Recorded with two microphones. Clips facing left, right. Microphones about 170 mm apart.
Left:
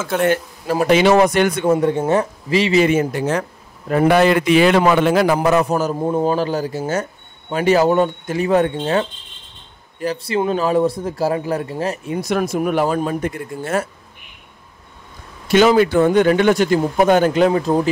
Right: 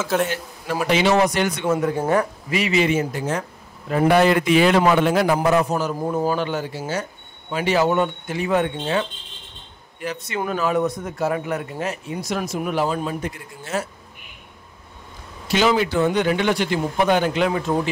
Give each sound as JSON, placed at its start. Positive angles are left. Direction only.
{"t": 0.0, "sound": "speech", "side_deg": 0}
{"t": 0.7, "sound": "speech", "side_deg": 40}
{"t": 0.9, "sound": "a man's voice", "side_deg": 55}
{"t": 1.7, "sound": "a man's voice", "side_deg": 30}
{"t": 2.8, "sound": "speech", "side_deg": 55}
{"t": 3.9, "sound": "a man's voice", "side_deg": 85}
{"t": 5.7, "sound": "a man's voice", "side_deg": 45}
{"t": 5.9, "sound": "speech", "side_deg": 25}
{"t": 12.1, "sound": "a man's voice", "side_deg": 60}
{"t": 15.4, "sound": "a man's voice", "side_deg": 50}